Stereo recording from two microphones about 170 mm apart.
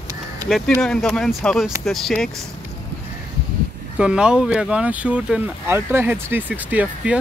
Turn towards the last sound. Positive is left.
turn(degrees=-10)  # may be behind; listen again after turning